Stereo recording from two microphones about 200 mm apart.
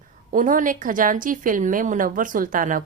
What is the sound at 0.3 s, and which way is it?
Speech, 40° right (ahead or behind).